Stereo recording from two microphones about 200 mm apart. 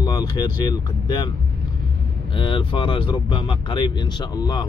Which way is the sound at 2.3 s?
25° left (ahead or behind).